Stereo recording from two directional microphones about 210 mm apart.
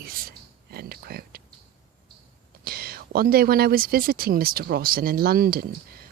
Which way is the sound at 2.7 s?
45° right (ahead or behind).